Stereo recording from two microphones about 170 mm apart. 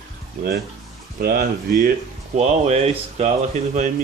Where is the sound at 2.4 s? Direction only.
40° right (ahead or behind).